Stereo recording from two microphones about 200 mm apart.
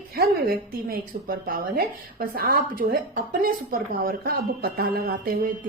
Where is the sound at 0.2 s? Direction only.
45° right (ahead or behind).